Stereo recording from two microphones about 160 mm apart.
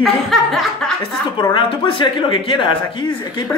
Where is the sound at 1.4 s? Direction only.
30° left (ahead or behind).